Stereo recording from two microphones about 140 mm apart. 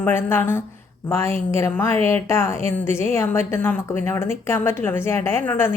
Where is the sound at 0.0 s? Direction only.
15° left (ahead or behind).